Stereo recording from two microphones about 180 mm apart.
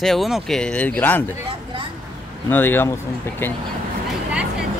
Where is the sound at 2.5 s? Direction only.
10° left (ahead or behind).